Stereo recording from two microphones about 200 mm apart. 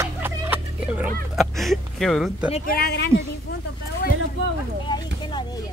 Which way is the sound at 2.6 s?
50° left (ahead or behind).